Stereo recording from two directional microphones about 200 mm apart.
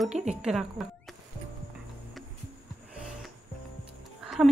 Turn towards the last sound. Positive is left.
turn(degrees=-5)  # may be behind; listen again after turning